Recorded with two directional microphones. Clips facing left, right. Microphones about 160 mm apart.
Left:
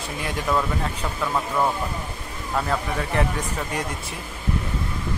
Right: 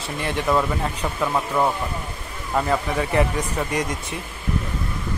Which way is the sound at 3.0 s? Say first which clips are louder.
Right 3 dB; 5° right (ahead or behind).